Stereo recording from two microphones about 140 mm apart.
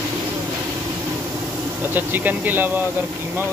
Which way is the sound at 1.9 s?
15° right (ahead or behind).